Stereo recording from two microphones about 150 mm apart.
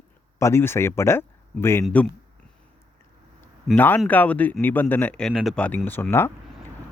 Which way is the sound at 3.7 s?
15° left (ahead or behind).